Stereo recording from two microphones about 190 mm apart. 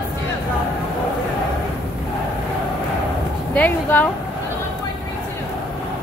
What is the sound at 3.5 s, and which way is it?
Speech, 10° left (ahead or behind).